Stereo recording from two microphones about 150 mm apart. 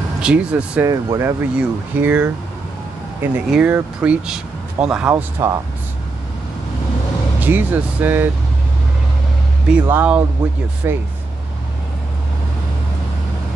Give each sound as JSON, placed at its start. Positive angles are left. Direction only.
{"t": 0.2, "sound": "speech", "side_deg": -5}
{"t": 0.8, "sound": "speech", "side_deg": -20}
{"t": 5.4, "sound": "speech", "side_deg": -20}
{"t": 7.3, "sound": "speech", "side_deg": -10}
{"t": 9.7, "sound": "speech", "side_deg": -10}